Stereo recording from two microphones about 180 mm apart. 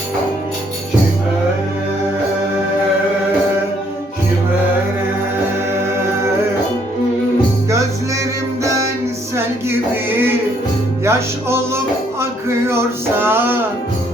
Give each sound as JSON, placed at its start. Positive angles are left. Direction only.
{"t": 7.7, "sound": "music", "side_deg": -15}
{"t": 9.3, "sound": "a sound", "side_deg": -15}
{"t": 11.0, "sound": "music", "side_deg": -15}